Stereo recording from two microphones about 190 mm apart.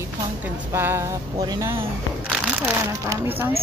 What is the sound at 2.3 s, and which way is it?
Speech, 10° right (ahead or behind).